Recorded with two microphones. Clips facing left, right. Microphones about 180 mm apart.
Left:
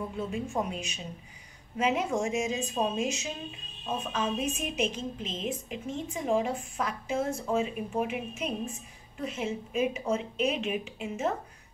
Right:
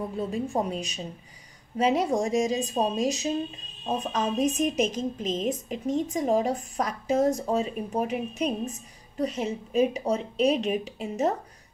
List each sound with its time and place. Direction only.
0.2 s a woman's voice: 35° right (ahead or behind)